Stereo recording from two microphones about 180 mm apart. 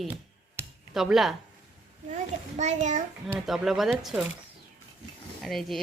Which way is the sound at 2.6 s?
40° right (ahead or behind).